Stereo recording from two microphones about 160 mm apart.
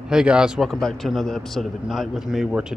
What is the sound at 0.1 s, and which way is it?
Speech, 5° right (ahead or behind).